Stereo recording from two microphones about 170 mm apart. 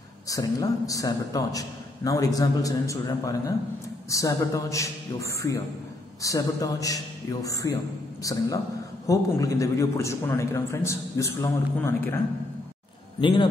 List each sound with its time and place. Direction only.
0.3 s a man's voice: 20° left (ahead or behind)
13.2 s a man's voice: 30° left (ahead or behind)